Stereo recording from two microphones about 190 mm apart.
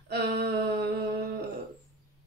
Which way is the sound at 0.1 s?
55° right (ahead or behind).